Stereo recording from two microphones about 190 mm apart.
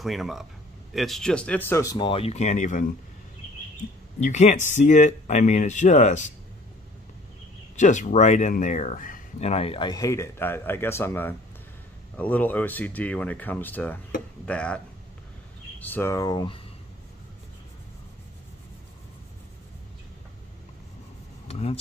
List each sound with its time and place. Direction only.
0.0 s speech: centre (ahead or behind); by 2.8 s 40° left (ahead or behind)
4.2 s speech: 40° left (ahead or behind)
7.7 s speech: 40° left (ahead or behind); by 14.8 s 5° left (ahead or behind)
15.8 s speech: 10° left (ahead or behind)
21.5 s vehicle: 35° left (ahead or behind)